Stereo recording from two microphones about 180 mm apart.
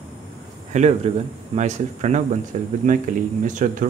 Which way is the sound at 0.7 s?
35° right (ahead or behind).